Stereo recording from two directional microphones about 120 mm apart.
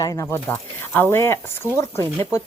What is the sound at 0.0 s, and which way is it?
Speech, 25° left (ahead or behind).